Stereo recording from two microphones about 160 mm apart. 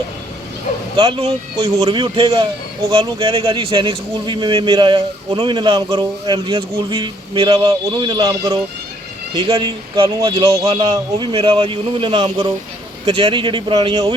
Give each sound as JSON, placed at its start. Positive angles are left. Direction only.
{"t": 0.9, "sound": "speech", "side_deg": -35}
{"t": 2.9, "sound": "speech", "side_deg": -35}